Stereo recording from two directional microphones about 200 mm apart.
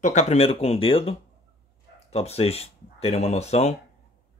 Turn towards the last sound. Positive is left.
turn(degrees=35)  # may be behind; listen again after turning